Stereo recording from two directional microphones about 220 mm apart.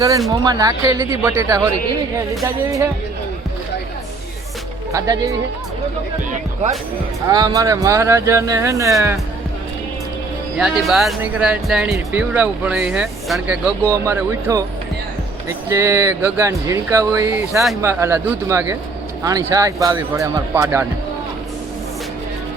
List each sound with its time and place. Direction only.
0.3 s speech: 15° right (ahead or behind)
4.9 s speech: 15° right (ahead or behind)
6.3 s speech: 30° right (ahead or behind)
7.3 s speech: 15° right (ahead or behind)
10.6 s speech: centre (ahead or behind)
14.0 s speech: 10° right (ahead or behind)